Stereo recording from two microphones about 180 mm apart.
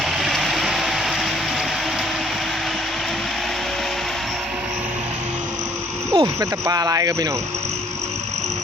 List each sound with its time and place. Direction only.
0.0 s vehicle: centre (ahead or behind)
6.1 s speech: 20° right (ahead or behind)